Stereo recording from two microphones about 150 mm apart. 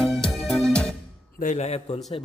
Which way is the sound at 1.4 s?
50° left (ahead or behind).